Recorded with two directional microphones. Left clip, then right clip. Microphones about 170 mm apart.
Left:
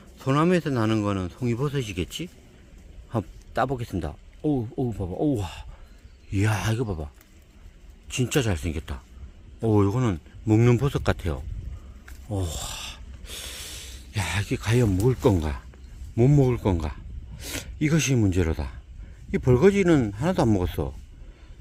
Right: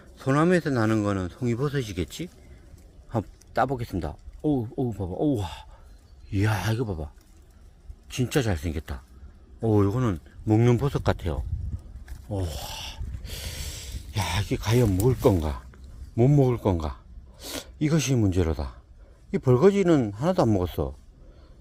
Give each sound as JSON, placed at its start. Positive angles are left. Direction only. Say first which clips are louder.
{"t": 0.0, "sound": "speech", "louder": "even", "side_deg": 5}
{"t": 12.3, "sound": "snort", "louder": "left 1 dB", "side_deg": 20}
{"t": 16.1, "sound": "speech", "louder": "even", "side_deg": 15}